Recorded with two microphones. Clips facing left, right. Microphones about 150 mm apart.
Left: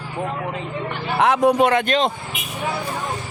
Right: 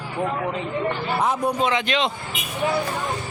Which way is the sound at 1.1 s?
90° left.